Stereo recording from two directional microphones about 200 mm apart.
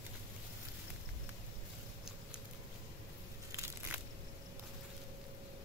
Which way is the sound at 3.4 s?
15° right (ahead or behind).